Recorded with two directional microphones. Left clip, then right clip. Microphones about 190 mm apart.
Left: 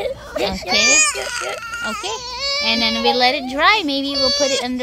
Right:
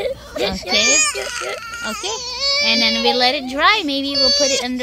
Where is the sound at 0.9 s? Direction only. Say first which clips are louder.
Left 1 dB; 30° left (ahead or behind).